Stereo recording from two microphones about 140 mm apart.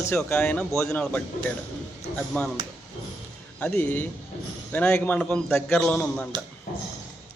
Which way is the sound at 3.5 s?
10° left (ahead or behind).